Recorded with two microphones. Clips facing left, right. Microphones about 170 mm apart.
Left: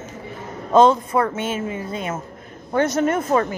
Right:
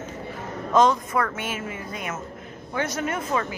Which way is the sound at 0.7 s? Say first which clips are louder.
Left 5 dB; 30° left (ahead or behind).